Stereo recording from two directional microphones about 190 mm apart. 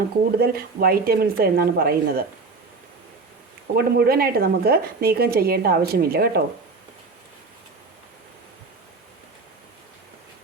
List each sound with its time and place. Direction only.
0.3 s a woman's voice: 55° right (ahead or behind)
3.8 s a woman's voice: 55° right (ahead or behind)